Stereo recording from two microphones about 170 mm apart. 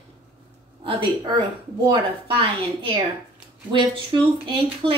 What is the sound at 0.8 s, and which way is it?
Speech, 25° right (ahead or behind).